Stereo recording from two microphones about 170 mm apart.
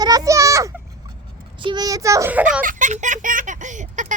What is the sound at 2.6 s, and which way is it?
Speech, 50° right (ahead or behind).